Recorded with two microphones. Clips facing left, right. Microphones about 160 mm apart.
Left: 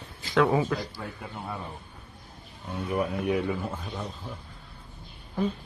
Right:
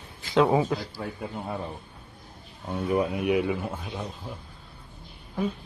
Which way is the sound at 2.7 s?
20° right (ahead or behind).